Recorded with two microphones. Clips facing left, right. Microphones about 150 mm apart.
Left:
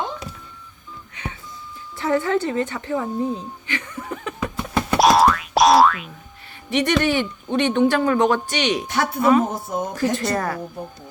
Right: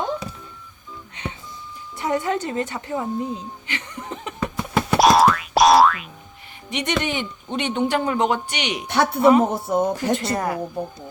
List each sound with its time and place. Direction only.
2.0 s a woman's voice: 15° right (ahead or behind)
4.4 s boing: 5° right (ahead or behind)
6.7 s a woman's voice: 20° right (ahead or behind)
9.6 s speech: 60° right (ahead or behind)
9.9 s speech: 20° right (ahead or behind)